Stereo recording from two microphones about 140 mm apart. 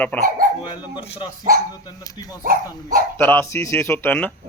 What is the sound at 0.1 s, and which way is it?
Speech, 10° left (ahead or behind).